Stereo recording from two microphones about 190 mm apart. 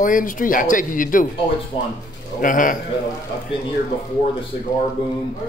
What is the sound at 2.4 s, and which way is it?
Speech, 45° left (ahead or behind).